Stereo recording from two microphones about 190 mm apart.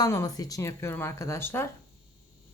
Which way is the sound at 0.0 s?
20° left (ahead or behind).